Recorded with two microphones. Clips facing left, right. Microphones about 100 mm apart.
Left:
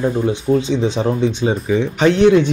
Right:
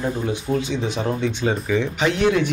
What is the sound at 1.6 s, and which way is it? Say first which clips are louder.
Speech: left 8 dB; 30° left (ahead or behind).